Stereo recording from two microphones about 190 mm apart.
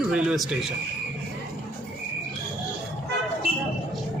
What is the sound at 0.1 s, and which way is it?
Speech, 5° right (ahead or behind).